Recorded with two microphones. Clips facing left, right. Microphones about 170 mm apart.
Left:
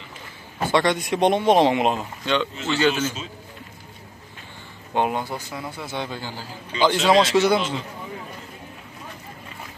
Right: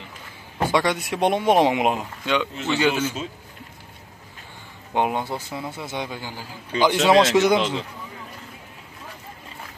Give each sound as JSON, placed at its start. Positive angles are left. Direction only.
{"t": 0.6, "sound": "speech", "side_deg": -10}
{"t": 4.9, "sound": "speech", "side_deg": -20}